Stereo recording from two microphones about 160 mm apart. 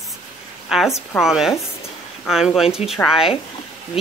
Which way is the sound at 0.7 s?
Centre (ahead or behind).